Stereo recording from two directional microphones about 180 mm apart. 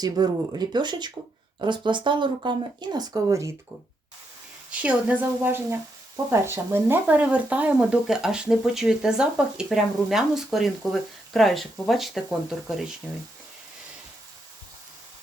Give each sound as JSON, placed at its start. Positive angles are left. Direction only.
{"t": 0.0, "sound": "speech", "side_deg": -20}
{"t": 4.7, "sound": "a woman's voice", "side_deg": -5}